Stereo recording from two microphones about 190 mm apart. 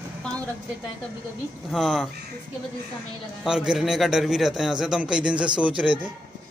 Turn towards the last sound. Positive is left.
turn(degrees=-5)  # may be behind; listen again after turning